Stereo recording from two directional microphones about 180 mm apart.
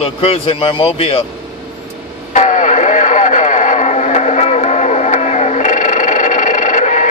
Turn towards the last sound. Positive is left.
turn(degrees=40)  # may be behind; listen again after turning